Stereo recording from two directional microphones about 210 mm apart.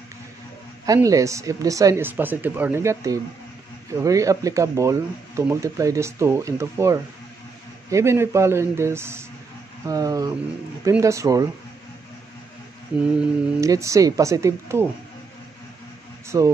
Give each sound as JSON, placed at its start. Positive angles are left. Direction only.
{"t": 0.8, "sound": "speech", "side_deg": -15}
{"t": 12.9, "sound": "mantra", "side_deg": -5}
{"t": 13.6, "sound": "speech", "side_deg": -15}
{"t": 16.3, "sound": "speech", "side_deg": -15}